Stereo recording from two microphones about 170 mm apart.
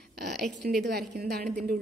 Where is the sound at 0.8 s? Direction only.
75° right (ahead or behind); by 1.7 s 55° right (ahead or behind).